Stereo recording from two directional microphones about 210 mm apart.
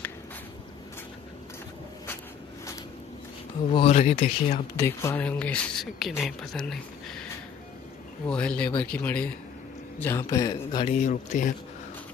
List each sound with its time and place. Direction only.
3.7 s speech: 30° left (ahead or behind)
4.7 s speech: 15° left (ahead or behind)
8.3 s a man's voice: 5° left (ahead or behind); by 11.0 s 20° left (ahead or behind)
11.0 s speech: 35° left (ahead or behind)